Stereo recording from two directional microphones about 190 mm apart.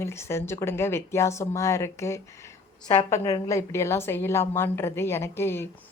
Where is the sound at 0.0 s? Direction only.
15° left (ahead or behind).